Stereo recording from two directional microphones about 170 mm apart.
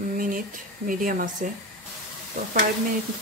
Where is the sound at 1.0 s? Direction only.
55° right (ahead or behind).